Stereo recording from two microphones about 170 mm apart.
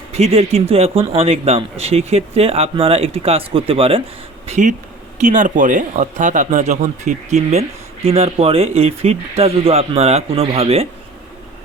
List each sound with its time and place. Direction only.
0.1 s speech: 35° right (ahead or behind)
4.4 s speech: 45° right (ahead or behind)